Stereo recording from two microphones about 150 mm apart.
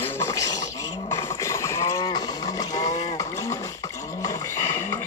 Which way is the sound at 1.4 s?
20° left (ahead or behind).